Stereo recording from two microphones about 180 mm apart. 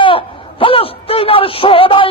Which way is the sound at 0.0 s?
30° left (ahead or behind).